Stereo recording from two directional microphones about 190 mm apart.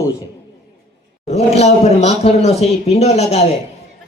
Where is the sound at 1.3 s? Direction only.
35° left (ahead or behind).